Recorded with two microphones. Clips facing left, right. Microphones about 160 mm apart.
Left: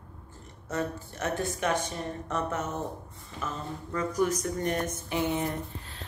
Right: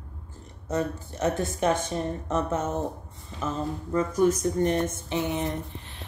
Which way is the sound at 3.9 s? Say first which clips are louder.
Right 5 dB; 25° right (ahead or behind).